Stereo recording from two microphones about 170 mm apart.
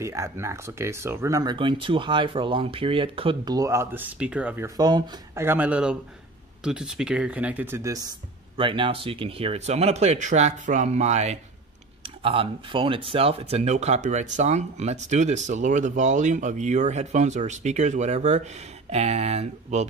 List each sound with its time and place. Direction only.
0.0 s speech: 15° right (ahead or behind)
4.6 s speech: 25° right (ahead or behind)
8.5 s speech: 30° right (ahead or behind)